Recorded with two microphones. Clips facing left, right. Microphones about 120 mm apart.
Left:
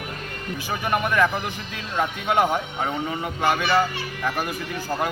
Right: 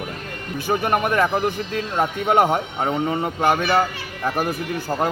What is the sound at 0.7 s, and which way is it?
Speech, 45° right (ahead or behind).